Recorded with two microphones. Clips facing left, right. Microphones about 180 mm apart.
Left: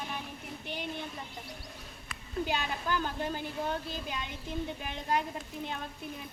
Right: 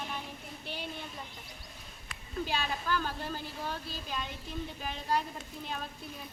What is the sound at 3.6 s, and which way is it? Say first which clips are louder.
Speech: left 7 dB; 20° left (ahead or behind).